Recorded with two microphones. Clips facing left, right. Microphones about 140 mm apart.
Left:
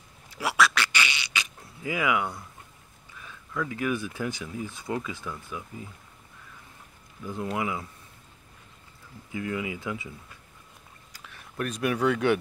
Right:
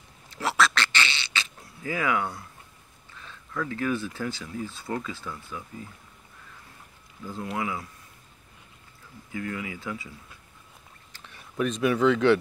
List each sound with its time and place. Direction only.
0.3 s fart: 10° left (ahead or behind)
3.2 s speech: 10° left (ahead or behind)
7.5 s speech: 20° left (ahead or behind)
9.3 s speech: 20° left (ahead or behind)
11.5 s speech: 5° left (ahead or behind)